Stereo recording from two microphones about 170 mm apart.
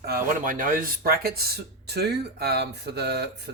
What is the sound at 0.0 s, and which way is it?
Speech, 60° right (ahead or behind).